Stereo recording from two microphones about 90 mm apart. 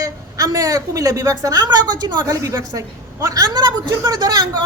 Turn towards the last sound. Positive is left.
turn(degrees=-50)  # may be behind; listen again after turning